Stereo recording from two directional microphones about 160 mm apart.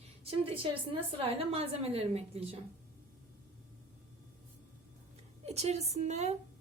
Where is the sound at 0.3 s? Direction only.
35° right (ahead or behind).